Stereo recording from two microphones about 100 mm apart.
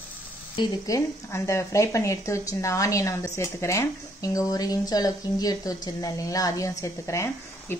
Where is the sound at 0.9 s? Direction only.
30° left (ahead or behind).